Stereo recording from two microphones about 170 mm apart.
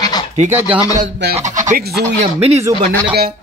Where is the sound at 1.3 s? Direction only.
45° right (ahead or behind).